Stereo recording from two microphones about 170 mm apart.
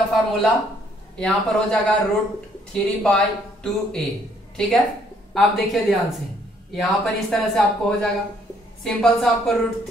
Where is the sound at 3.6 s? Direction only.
5° left (ahead or behind).